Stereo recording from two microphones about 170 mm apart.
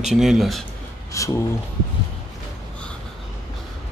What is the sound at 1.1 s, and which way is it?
Speech, 20° left (ahead or behind).